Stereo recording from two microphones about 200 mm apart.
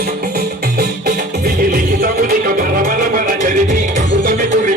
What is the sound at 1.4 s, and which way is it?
Music, 45° right (ahead or behind).